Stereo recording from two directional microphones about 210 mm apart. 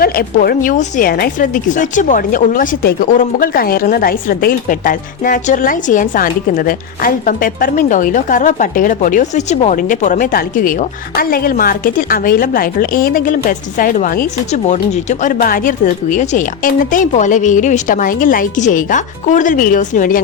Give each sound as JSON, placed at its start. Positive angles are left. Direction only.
{"t": 0.0, "sound": "a woman's voice", "side_deg": 45}